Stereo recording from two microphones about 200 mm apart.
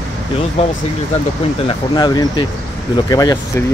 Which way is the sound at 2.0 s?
20° left (ahead or behind).